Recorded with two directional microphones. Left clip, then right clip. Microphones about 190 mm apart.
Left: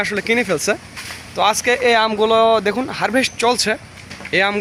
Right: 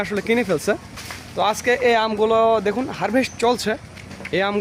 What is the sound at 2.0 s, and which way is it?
Speech, 25° left (ahead or behind).